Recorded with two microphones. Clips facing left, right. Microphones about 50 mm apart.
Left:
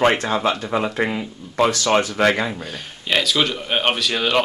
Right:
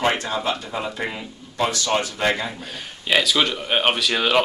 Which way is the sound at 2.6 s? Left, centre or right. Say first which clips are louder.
Left 2 dB; centre.